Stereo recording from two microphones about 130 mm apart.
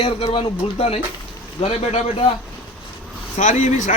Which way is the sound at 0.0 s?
55° left (ahead or behind).